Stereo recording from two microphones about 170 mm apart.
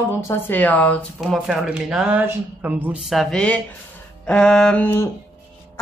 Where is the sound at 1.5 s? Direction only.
Centre (ahead or behind).